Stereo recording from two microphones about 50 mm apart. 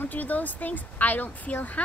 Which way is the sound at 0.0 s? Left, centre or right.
Left.